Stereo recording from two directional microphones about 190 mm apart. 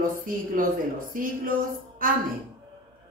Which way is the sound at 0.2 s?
45° right (ahead or behind).